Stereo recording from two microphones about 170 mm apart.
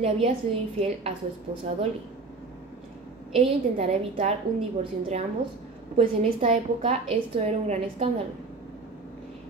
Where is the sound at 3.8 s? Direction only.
40° right (ahead or behind).